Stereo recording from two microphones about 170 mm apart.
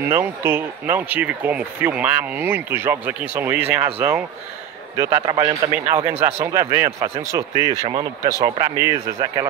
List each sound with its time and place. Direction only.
0.0 s a man's voice: 15° right (ahead or behind)
5.2 s speech: 30° right (ahead or behind)
6.4 s speech: 15° right (ahead or behind)